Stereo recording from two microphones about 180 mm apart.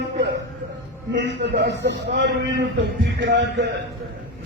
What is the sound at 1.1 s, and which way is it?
A man's voice, 70° right (ahead or behind).